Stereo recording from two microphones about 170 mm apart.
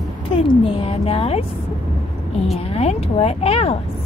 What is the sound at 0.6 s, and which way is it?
Speech, 35° left (ahead or behind).